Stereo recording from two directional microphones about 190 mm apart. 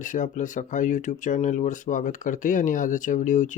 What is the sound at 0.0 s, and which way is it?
Speech, 40° left (ahead or behind).